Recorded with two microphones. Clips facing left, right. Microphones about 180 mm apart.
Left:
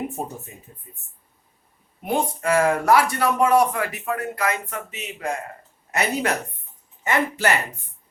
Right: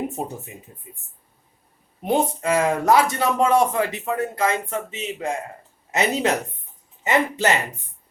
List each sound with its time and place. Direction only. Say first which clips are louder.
2.1 s speech: even; 20° right (ahead or behind)